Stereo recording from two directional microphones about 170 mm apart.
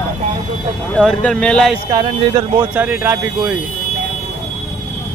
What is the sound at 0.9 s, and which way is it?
Speech, 5° left (ahead or behind).